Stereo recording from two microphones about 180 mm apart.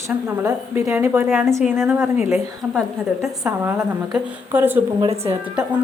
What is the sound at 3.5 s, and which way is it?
A woman's voice, 10° right (ahead or behind).